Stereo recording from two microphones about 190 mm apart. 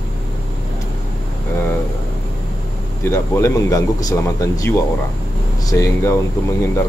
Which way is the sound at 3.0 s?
15° left (ahead or behind).